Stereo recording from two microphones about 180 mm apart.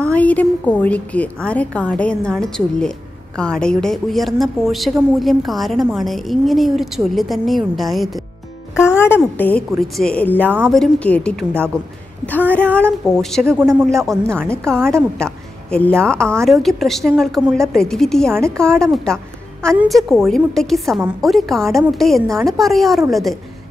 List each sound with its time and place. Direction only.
0.0 s a woman's voice: 10° left (ahead or behind)
8.7 s a woman's voice: 15° left (ahead or behind)